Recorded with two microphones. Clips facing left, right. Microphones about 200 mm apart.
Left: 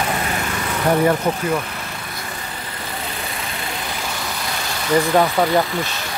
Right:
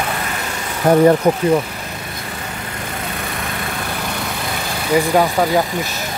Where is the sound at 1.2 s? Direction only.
35° right (ahead or behind).